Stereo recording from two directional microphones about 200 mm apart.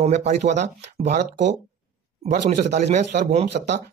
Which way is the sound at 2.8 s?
35° right (ahead or behind).